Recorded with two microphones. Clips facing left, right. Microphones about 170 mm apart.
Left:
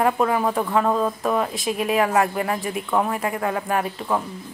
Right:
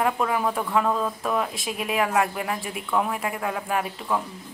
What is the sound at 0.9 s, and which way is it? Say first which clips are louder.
Speech: left 4 dB; 30° left (ahead or behind).